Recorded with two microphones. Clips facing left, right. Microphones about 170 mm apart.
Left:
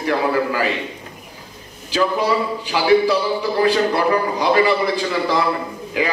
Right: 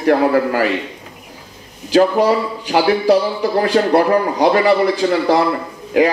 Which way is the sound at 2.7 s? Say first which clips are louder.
Right 2 dB; 50° right (ahead or behind).